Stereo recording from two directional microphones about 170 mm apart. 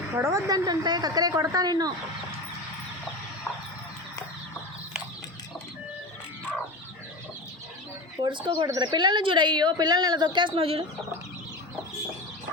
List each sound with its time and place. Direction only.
0.2 s a woman's voice: 20° right (ahead or behind)
8.2 s a woman's voice: 25° right (ahead or behind)